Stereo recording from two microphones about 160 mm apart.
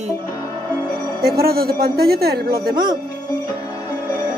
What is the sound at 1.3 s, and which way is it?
A man's voice, 70° right (ahead or behind).